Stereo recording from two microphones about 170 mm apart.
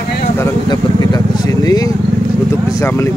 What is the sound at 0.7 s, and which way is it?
Speech, 25° left (ahead or behind).